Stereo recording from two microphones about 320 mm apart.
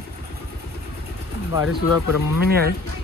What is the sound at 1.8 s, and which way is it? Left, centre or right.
Speech, left.